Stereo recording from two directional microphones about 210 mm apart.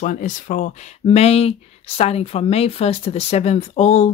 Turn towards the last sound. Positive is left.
turn(degrees=30)  # may be behind; listen again after turning